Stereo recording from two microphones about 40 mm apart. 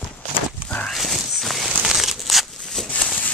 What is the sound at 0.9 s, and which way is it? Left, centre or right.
Walk, centre.